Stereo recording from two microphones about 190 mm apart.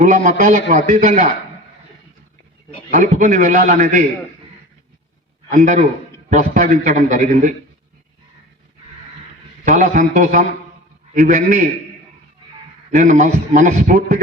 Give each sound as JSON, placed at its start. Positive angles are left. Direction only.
{"t": 0.0, "sound": "a man's voice", "side_deg": -40}
{"t": 2.9, "sound": "a man's voice", "side_deg": -40}
{"t": 5.5, "sound": "a man's voice", "side_deg": -40}
{"t": 9.6, "sound": "a man's voice", "side_deg": -40}
{"t": 12.9, "sound": "a man's voice", "side_deg": -40}